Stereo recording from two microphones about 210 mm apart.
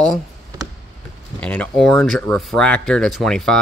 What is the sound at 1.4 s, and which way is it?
Speech, 5° left (ahead or behind).